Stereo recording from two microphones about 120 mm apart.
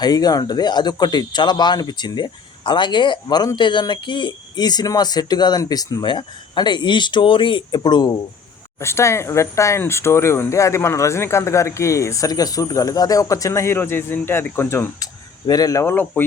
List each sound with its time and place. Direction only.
0.0 s speech: 35° left (ahead or behind)
8.8 s speech: 20° left (ahead or behind)